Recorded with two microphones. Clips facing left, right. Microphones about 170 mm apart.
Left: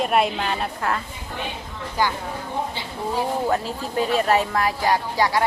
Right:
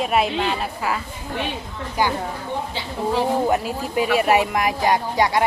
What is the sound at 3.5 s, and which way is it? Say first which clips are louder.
Speech: right 2 dB; 10° right (ahead or behind).